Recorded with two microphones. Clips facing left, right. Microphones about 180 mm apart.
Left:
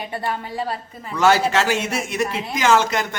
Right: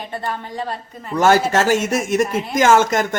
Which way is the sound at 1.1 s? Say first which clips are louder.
Right 2 dB; 45° right (ahead or behind).